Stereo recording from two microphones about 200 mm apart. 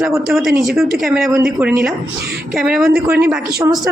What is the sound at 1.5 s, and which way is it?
Speech, 15° right (ahead or behind).